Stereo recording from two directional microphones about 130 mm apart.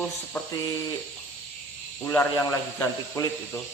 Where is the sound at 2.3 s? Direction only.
30° left (ahead or behind).